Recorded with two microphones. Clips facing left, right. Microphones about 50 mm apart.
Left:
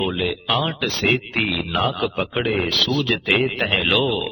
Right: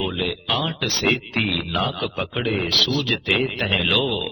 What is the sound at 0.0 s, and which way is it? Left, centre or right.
A man's voice, centre.